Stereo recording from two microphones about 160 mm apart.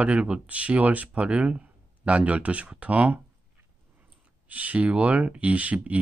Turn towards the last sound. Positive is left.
turn(degrees=-10)  # may be behind; listen again after turning